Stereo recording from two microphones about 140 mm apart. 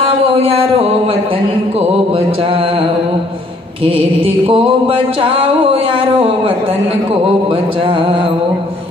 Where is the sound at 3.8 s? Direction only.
40° right (ahead or behind).